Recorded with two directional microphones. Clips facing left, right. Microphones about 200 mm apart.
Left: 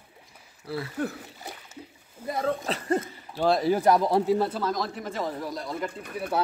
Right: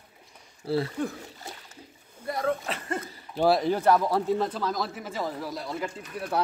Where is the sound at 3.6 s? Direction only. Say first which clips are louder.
Left 1 dB; 10° left (ahead or behind).